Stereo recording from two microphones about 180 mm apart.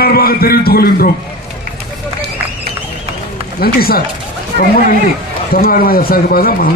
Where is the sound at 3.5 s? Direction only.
55° left (ahead or behind).